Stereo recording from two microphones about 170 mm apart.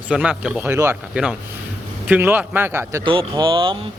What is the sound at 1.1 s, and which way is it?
A man's voice, 5° right (ahead or behind).